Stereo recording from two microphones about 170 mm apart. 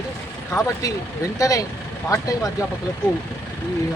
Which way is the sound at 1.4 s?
20° left (ahead or behind).